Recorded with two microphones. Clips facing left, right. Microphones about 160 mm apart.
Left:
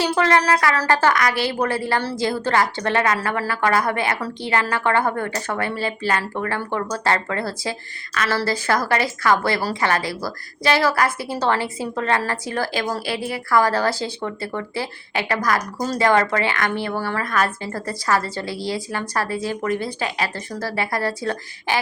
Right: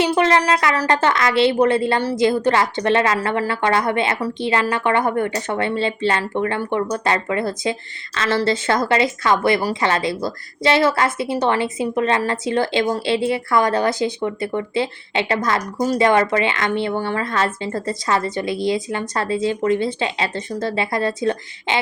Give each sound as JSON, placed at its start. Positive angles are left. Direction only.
{"t": 0.0, "sound": "speech", "side_deg": -20}